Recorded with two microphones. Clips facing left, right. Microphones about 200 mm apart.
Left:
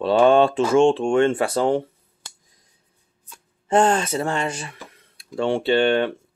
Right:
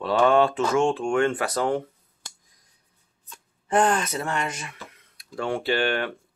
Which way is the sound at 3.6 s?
25° left (ahead or behind).